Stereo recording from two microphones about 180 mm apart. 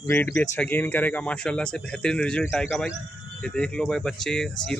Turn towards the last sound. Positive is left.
turn(degrees=5)  # may be behind; listen again after turning